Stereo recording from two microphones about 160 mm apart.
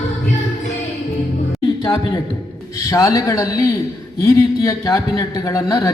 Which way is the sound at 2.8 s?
20° left (ahead or behind).